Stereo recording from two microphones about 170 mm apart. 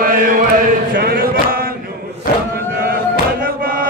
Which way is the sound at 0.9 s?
60° right (ahead or behind).